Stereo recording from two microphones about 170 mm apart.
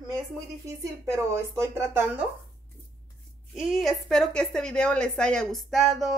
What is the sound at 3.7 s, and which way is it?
A woman's voice, centre (ahead or behind).